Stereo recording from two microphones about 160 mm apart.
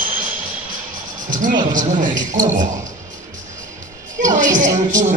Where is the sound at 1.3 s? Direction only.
55° right (ahead or behind).